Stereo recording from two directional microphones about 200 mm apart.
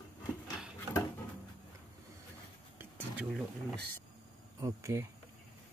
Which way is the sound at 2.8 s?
5° right (ahead or behind).